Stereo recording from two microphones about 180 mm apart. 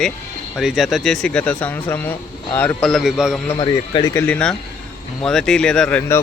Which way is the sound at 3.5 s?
30° left (ahead or behind).